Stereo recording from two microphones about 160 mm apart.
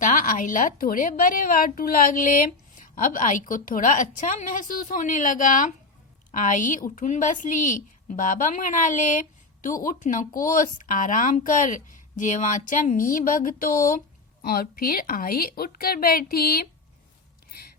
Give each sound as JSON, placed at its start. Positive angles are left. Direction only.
{"t": 0.0, "sound": "a woman's voice", "side_deg": 55}